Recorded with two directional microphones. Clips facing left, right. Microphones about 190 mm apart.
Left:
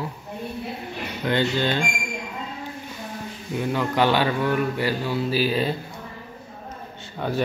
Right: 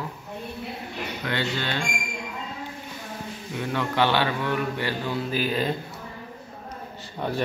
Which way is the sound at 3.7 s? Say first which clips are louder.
Left 2 dB; 15° left (ahead or behind).